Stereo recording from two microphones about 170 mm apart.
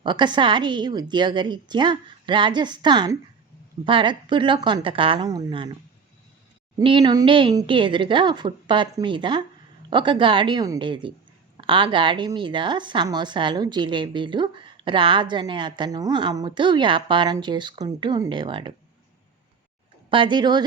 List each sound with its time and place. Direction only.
0.0 s a woman's voice: 25° right (ahead or behind)
6.7 s a woman's voice: 25° right (ahead or behind)
20.1 s a woman's voice: 30° right (ahead or behind)